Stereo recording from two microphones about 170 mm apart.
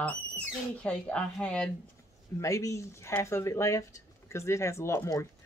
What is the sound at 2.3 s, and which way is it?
Speech, 20° left (ahead or behind).